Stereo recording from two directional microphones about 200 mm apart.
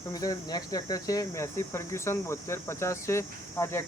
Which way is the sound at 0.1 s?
20° left (ahead or behind).